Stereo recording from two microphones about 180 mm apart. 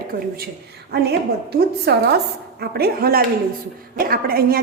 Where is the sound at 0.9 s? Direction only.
60° right (ahead or behind).